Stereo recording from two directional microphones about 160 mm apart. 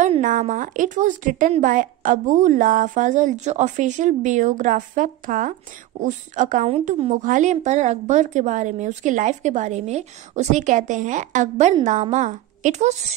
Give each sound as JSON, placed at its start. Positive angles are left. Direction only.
{"t": 0.2, "sound": "a woman's voice", "side_deg": -50}